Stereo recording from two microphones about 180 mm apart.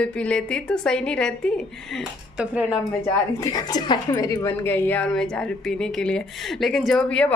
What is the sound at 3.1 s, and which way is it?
A woman's voice, 20° left (ahead or behind).